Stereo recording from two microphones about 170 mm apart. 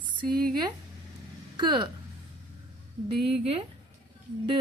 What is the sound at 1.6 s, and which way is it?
Speech, 25° right (ahead or behind).